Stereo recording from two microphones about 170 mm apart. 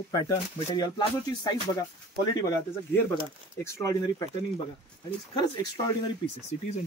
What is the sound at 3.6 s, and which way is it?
Speech, 15° left (ahead or behind).